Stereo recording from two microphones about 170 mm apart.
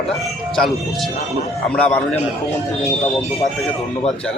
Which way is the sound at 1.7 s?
10° left (ahead or behind).